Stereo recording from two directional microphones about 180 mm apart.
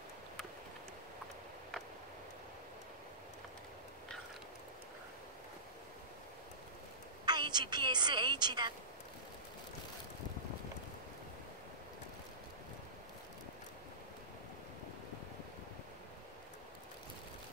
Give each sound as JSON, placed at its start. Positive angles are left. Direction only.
{"t": 7.2, "sound": "a woman's voice", "side_deg": -25}